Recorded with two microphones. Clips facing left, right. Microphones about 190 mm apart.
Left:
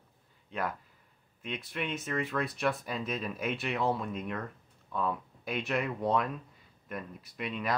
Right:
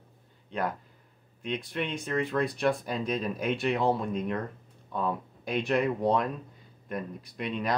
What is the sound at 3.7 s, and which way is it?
Speech, 30° right (ahead or behind).